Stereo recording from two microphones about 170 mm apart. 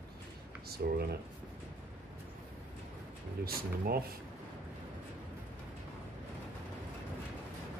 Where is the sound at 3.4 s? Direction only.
65° right (ahead or behind).